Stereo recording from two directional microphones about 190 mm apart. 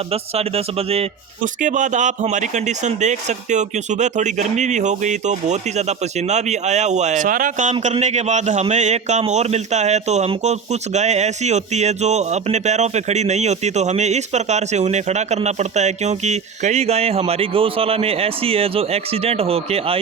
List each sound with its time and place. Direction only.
0.1 s a man's voice: 30° right (ahead or behind)